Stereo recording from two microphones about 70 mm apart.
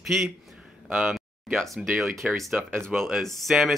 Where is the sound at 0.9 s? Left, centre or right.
Right.